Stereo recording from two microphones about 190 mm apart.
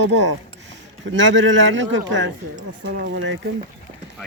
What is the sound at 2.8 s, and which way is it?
Speech, 60° right (ahead or behind).